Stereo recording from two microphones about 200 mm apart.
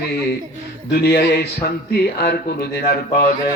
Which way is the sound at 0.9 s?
55° left (ahead or behind).